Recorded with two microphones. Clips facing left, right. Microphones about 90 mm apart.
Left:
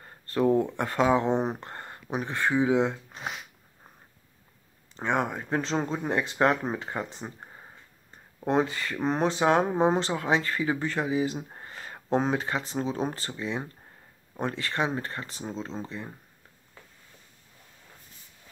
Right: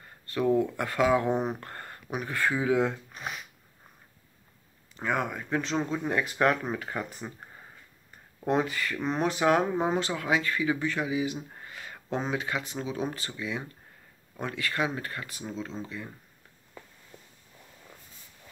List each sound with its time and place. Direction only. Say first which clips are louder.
0.0 s speech: left 3 dB; 35° left (ahead or behind)
4.9 s speech: left 2 dB; 30° left (ahead or behind)